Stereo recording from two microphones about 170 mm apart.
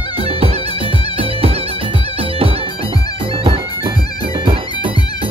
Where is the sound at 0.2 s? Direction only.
35° right (ahead or behind).